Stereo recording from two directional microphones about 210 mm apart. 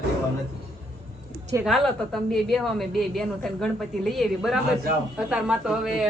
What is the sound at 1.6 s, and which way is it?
A woman's voice, centre (ahead or behind).